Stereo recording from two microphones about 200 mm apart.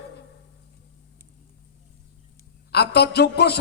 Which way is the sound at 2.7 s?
55° left (ahead or behind).